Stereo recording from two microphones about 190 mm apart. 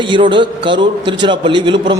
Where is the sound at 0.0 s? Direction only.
25° right (ahead or behind).